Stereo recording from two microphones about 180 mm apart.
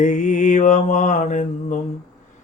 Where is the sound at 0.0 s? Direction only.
45° left (ahead or behind).